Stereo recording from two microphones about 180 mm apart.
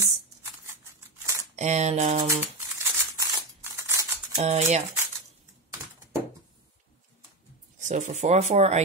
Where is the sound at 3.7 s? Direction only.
15° right (ahead or behind).